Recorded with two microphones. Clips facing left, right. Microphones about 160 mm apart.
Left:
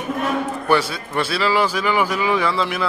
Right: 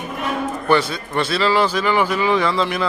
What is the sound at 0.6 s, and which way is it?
A man's voice, 10° left (ahead or behind).